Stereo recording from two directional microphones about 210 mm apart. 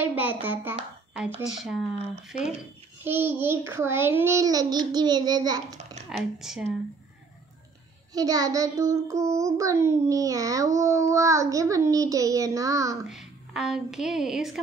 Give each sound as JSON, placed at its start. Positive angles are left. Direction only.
{"t": 0.0, "sound": "a sound", "side_deg": -10}
{"t": 1.6, "sound": "speech", "side_deg": 0}
{"t": 3.0, "sound": "child singing", "side_deg": -10}
{"t": 6.3, "sound": "speech", "side_deg": 0}
{"t": 8.1, "sound": "child singing", "side_deg": -15}
{"t": 13.0, "sound": "a woman's voice", "side_deg": 0}